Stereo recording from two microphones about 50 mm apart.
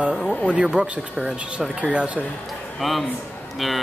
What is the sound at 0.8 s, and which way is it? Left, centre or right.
Speech, right.